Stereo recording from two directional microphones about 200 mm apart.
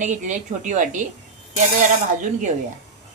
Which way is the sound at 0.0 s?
40° right (ahead or behind).